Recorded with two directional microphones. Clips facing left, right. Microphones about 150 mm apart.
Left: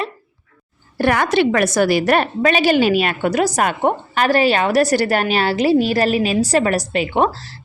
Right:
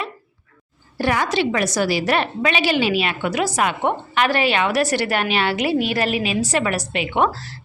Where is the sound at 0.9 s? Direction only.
55° left (ahead or behind).